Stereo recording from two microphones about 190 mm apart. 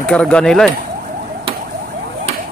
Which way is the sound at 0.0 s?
5° left (ahead or behind).